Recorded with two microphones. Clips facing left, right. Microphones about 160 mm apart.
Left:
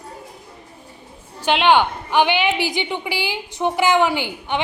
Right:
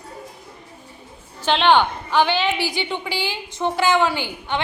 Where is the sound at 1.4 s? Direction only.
10° left (ahead or behind).